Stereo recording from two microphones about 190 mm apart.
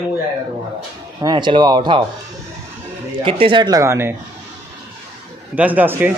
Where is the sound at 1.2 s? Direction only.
25° right (ahead or behind).